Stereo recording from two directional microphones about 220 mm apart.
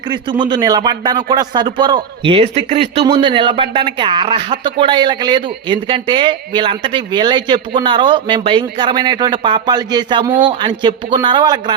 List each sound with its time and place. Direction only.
0.1 s speech: 20° right (ahead or behind)